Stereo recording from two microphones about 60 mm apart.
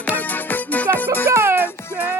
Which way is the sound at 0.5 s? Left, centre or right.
Left.